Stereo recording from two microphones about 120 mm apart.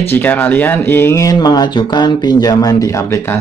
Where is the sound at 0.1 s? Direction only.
15° left (ahead or behind).